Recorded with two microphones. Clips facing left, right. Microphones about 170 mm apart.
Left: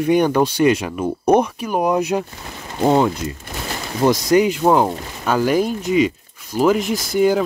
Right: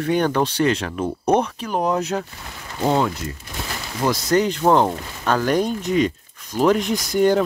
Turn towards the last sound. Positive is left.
turn(degrees=5)  # may be behind; listen again after turning